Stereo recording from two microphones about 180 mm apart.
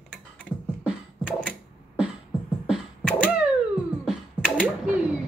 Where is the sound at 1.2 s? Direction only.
5° left (ahead or behind).